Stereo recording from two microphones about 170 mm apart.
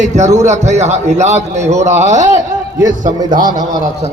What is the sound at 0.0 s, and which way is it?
A man's voice, 45° right (ahead or behind).